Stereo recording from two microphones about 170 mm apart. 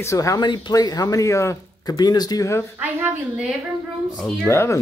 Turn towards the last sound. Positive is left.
turn(degrees=15)  # may be behind; listen again after turning